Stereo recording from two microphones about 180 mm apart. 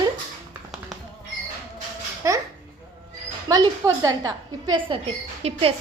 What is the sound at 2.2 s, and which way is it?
Speech, 20° right (ahead or behind).